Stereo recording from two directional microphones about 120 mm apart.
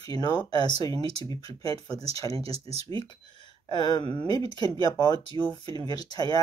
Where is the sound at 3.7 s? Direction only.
40° left (ahead or behind).